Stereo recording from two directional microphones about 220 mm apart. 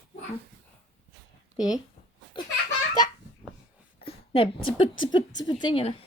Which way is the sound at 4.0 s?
25° left (ahead or behind).